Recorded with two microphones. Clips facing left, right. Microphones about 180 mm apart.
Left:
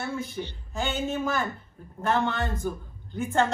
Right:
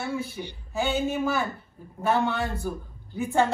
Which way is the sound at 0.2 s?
5° right (ahead or behind).